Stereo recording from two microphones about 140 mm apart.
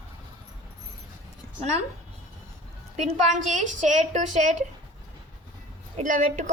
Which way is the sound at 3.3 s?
60° right (ahead or behind).